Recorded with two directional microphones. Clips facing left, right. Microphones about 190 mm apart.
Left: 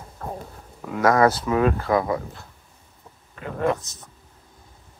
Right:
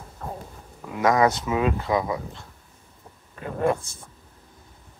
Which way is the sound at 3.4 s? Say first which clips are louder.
Even; 20° right (ahead or behind).